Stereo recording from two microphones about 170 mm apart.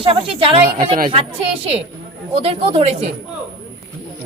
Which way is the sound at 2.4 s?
35° right (ahead or behind).